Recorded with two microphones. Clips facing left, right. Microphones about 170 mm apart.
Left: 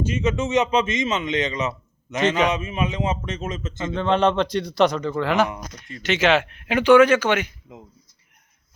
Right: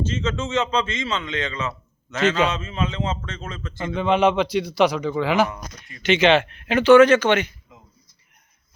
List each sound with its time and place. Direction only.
0.0 s a man's voice: 15° left (ahead or behind)
3.9 s a man's voice: 5° right (ahead or behind)